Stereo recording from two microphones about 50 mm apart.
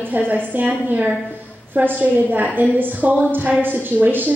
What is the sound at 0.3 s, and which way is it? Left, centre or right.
A woman's voice, right.